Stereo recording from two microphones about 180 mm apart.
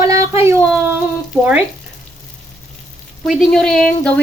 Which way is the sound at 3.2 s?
Centre (ahead or behind).